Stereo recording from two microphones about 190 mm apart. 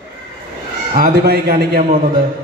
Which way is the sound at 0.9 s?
50° right (ahead or behind).